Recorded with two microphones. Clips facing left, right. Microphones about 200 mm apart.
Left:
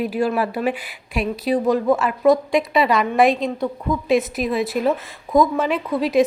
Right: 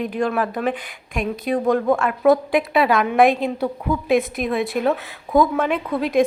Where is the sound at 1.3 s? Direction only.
50° right (ahead or behind).